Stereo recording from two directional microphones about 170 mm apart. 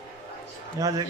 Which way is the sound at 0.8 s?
20° right (ahead or behind).